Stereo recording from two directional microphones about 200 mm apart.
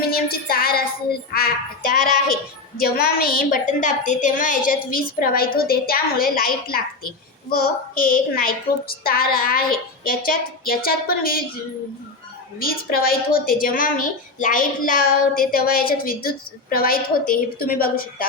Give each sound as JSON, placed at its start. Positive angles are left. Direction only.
{"t": 0.0, "sound": "music", "side_deg": 50}
{"t": 1.3, "sound": "speech", "side_deg": 50}
{"t": 12.5, "sound": "speech", "side_deg": 50}